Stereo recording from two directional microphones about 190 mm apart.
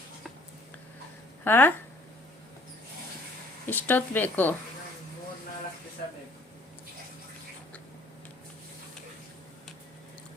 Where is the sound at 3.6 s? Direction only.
10° left (ahead or behind).